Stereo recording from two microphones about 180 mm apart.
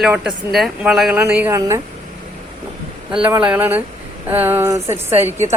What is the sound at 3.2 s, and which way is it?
Speech, 5° right (ahead or behind).